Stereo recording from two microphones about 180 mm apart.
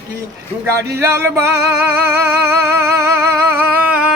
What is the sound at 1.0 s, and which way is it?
Speech, 15° right (ahead or behind).